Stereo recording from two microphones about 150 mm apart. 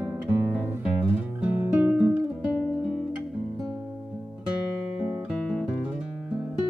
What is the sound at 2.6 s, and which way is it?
Guitar, 5° right (ahead or behind).